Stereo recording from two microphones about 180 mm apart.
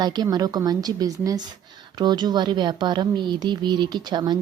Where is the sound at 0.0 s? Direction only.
20° right (ahead or behind).